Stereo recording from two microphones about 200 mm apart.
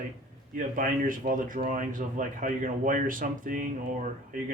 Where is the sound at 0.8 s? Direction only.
45° right (ahead or behind).